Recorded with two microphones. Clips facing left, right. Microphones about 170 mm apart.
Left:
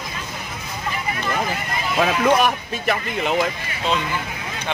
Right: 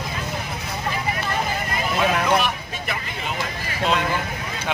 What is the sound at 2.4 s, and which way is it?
Speech, 50° left (ahead or behind).